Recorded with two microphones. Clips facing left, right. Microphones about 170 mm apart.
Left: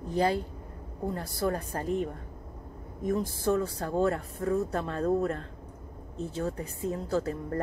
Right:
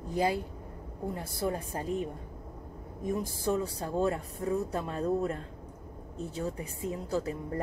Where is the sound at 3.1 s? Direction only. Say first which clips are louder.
Left 3 dB; 15° right (ahead or behind).